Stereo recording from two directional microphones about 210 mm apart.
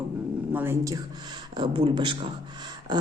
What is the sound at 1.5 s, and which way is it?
Speech, 25° right (ahead or behind).